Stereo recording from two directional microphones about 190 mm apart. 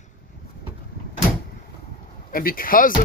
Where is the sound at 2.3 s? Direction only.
50° left (ahead or behind).